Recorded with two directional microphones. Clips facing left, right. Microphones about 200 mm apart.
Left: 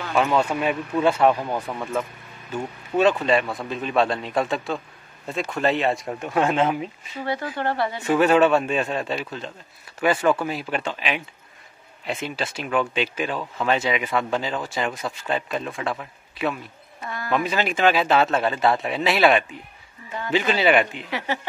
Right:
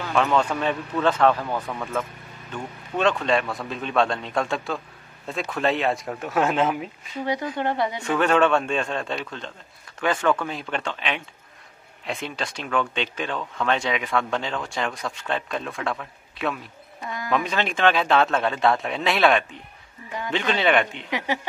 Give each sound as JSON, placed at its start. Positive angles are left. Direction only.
{"t": 0.1, "sound": "speech", "side_deg": 5}
{"t": 7.5, "sound": "speech", "side_deg": -20}
{"t": 8.0, "sound": "speech", "side_deg": 5}